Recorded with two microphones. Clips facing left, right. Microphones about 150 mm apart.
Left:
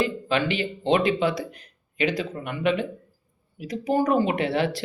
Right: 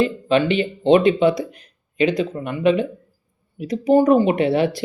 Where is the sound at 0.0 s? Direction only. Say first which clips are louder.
Right 6 dB; 25° right (ahead or behind).